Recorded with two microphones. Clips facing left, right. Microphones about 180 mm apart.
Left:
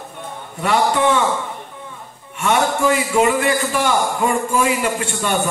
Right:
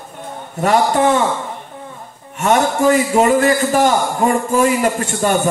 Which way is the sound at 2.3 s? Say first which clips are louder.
Right 3 dB; 40° right (ahead or behind).